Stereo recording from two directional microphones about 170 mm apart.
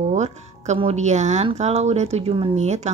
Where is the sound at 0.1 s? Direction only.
40° right (ahead or behind).